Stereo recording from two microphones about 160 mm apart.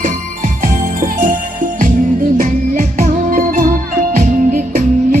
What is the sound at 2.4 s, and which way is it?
Music, 55° right (ahead or behind).